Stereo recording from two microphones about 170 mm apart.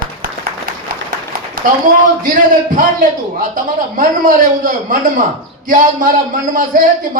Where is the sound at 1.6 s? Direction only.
55° right (ahead or behind).